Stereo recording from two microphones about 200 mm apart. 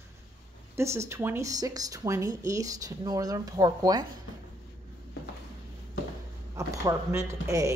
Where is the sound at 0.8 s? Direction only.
15° right (ahead or behind).